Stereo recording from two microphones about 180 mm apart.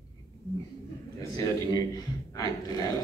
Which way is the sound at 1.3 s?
20° left (ahead or behind).